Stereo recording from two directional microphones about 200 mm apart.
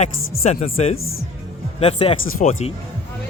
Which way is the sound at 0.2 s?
90° left.